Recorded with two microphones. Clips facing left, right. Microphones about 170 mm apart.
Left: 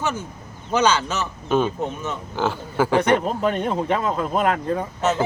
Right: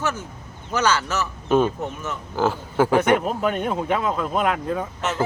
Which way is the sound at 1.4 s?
Centre (ahead or behind).